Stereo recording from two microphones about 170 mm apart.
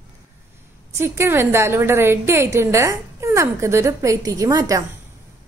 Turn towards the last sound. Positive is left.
turn(degrees=-20)  # may be behind; listen again after turning